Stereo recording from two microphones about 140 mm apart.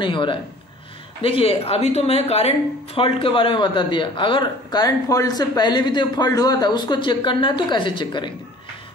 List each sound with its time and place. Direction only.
0.0 s speech: 35° left (ahead or behind)